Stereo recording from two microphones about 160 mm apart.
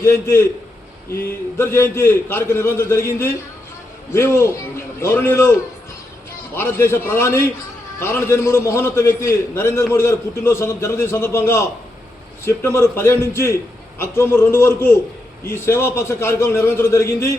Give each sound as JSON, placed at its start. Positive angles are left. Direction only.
{"t": 0.0, "sound": "a man's voice", "side_deg": 15}
{"t": 1.5, "sound": "a man's voice", "side_deg": 15}